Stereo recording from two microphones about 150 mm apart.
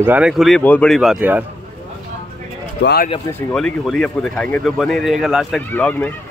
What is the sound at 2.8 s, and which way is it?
Speech, 90° left.